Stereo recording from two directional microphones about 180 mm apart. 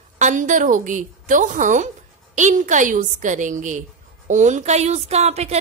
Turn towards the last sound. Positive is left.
turn(degrees=-35)  # may be behind; listen again after turning